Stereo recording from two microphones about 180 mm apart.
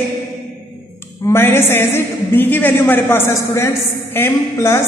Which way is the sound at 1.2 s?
15° left (ahead or behind).